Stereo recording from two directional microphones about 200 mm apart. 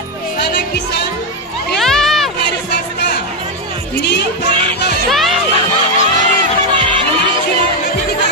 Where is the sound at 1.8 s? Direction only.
Centre (ahead or behind).